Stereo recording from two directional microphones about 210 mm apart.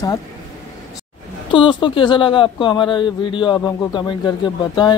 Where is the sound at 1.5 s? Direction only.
20° left (ahead or behind).